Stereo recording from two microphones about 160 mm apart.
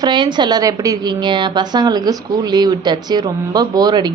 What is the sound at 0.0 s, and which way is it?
A woman's voice, 30° right (ahead or behind).